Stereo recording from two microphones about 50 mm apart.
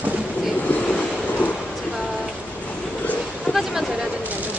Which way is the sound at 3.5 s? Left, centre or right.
Centre.